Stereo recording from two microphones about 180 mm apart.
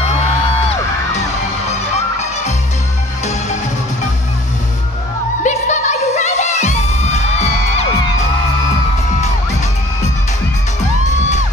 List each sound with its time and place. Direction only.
5.4 s music: 40° left (ahead or behind)